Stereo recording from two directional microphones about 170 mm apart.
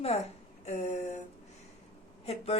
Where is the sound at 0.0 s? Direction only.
40° left (ahead or behind).